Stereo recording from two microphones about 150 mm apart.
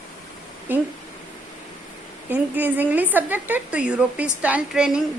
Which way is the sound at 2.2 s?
10° right (ahead or behind).